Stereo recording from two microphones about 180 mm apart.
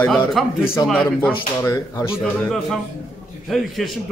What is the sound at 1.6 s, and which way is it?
Speech, 15° left (ahead or behind).